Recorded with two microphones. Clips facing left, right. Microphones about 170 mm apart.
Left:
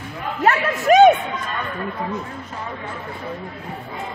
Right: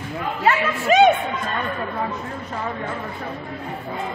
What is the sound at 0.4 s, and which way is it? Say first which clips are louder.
Speech: left 2 dB; 45° left (ahead or behind).